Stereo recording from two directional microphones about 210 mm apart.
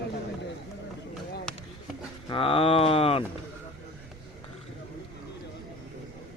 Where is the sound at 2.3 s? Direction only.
25° left (ahead or behind).